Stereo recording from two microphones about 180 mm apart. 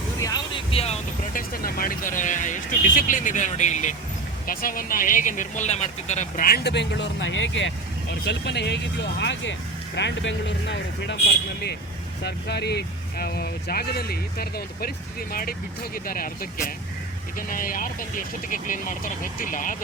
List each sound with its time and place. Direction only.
0.2 s music: 20° left (ahead or behind)
1.3 s speech: 55° left (ahead or behind)
4.4 s speech: 50° left (ahead or behind); by 7.7 s 90° left
8.2 s speech: 75° left (ahead or behind)
12.2 s speech: 65° left (ahead or behind); by 19.7 s 45° left (ahead or behind)